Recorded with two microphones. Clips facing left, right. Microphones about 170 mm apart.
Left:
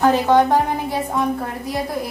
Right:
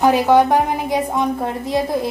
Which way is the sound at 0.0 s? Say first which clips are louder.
Right 2 dB; 15° right (ahead or behind).